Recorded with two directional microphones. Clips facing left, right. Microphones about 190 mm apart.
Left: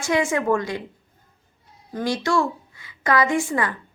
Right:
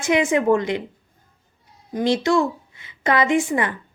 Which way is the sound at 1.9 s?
20° right (ahead or behind).